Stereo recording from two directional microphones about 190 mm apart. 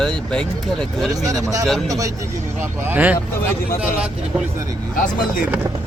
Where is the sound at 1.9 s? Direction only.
20° right (ahead or behind).